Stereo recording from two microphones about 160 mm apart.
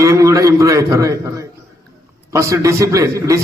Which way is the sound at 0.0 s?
20° right (ahead or behind).